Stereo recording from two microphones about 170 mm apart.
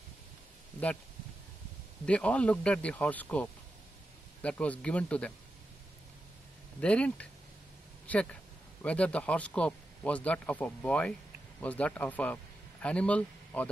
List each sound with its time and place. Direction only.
2.0 s speech: 5° left (ahead or behind)
6.8 s speech: 5° left (ahead or behind)